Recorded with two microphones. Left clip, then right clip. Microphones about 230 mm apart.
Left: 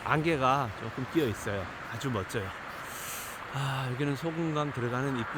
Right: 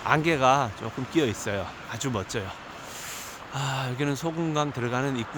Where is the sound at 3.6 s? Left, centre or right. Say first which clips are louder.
Right 5 dB; centre.